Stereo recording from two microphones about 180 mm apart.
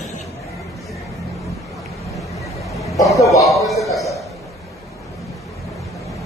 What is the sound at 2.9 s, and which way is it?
Speech, 20° left (ahead or behind).